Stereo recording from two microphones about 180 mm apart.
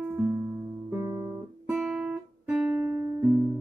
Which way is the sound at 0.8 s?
15° right (ahead or behind).